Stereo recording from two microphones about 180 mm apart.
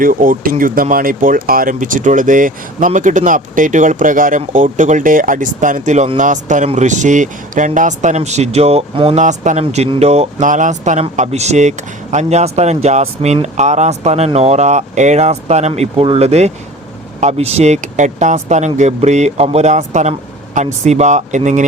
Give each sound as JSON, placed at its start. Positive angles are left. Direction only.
{"t": 0.0, "sound": "speech", "side_deg": -50}